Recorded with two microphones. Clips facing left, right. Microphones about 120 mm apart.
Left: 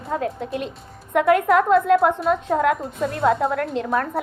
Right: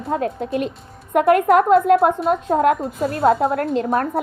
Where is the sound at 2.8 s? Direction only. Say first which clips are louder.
Right 3 dB; 35° right (ahead or behind).